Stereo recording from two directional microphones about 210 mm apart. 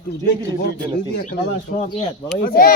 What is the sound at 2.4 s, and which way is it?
Speech, 45° left (ahead or behind).